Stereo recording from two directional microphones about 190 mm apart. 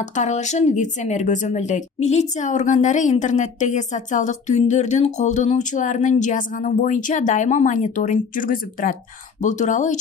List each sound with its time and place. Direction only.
0.0 s speech: 40° left (ahead or behind)